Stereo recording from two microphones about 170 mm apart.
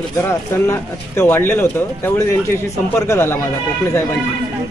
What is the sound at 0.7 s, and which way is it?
Speech, 15° left (ahead or behind).